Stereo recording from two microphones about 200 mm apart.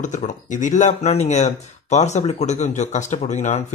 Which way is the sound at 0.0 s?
40° left (ahead or behind).